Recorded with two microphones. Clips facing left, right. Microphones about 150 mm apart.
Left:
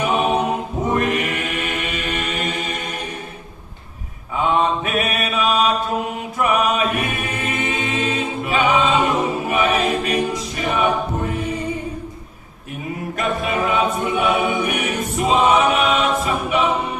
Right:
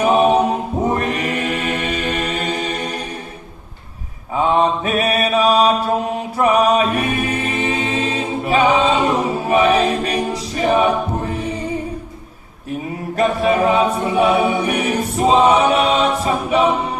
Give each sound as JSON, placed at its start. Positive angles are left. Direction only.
{"t": 0.0, "sound": "a capella", "side_deg": -35}
{"t": 0.9, "sound": "mantra", "side_deg": -35}
{"t": 4.4, "sound": "mantra", "side_deg": -35}
{"t": 6.3, "sound": "choir", "side_deg": -35}
{"t": 13.1, "sound": "a capella", "side_deg": -35}